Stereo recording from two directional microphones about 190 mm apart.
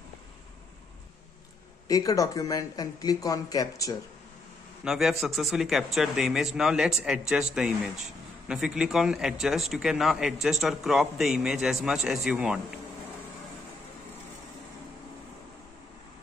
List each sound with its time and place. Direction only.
1.9 s speech: 20° left (ahead or behind)
4.8 s a man's voice: centre (ahead or behind)